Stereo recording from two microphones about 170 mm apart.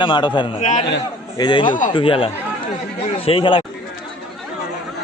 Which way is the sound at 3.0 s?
35° left (ahead or behind).